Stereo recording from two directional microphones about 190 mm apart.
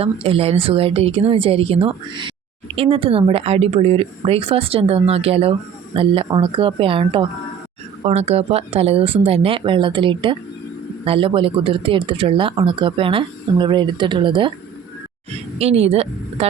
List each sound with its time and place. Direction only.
0.0 s speech: 30° right (ahead or behind)
15.5 s speech: 35° right (ahead or behind)